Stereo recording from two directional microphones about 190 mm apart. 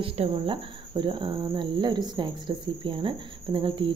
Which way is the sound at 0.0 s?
30° right (ahead or behind).